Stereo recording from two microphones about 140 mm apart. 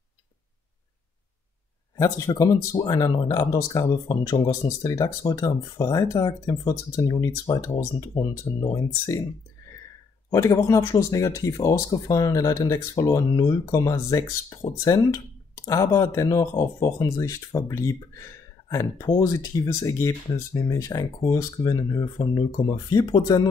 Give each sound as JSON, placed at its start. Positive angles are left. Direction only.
{"t": 2.0, "sound": "speech", "side_deg": 20}
{"t": 10.3, "sound": "speech", "side_deg": 25}